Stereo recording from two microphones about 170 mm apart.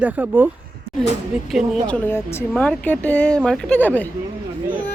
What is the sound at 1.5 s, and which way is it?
A child's voice, 5° left (ahead or behind).